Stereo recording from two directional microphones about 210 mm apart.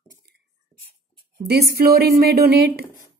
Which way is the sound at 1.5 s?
50° right (ahead or behind).